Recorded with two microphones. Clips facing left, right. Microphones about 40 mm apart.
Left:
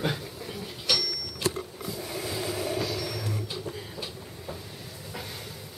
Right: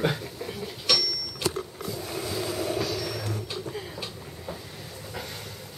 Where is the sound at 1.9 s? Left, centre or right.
Centre.